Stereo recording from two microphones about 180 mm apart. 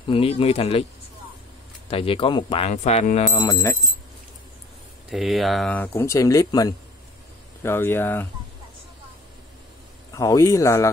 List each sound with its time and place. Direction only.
0.1 s speech: 30° left (ahead or behind)
1.9 s speech: 30° left (ahead or behind)
2.7 s speech: 40° left (ahead or behind)
3.3 s speech: 20° left (ahead or behind)
5.1 s speech: centre (ahead or behind)
10.1 s speech: 20° left (ahead or behind)